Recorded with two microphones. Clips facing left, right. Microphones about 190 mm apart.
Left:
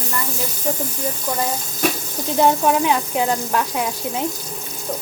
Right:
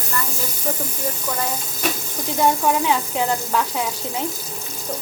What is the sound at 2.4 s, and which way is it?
Frying, 15° left (ahead or behind).